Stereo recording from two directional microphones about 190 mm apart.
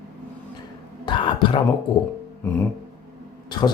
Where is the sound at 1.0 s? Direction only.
25° left (ahead or behind).